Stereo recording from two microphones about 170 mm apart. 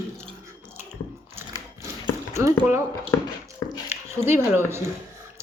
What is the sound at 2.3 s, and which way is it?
Speech, 15° right (ahead or behind).